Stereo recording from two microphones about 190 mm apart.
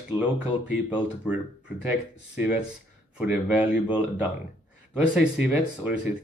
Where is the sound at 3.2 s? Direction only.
5° right (ahead or behind).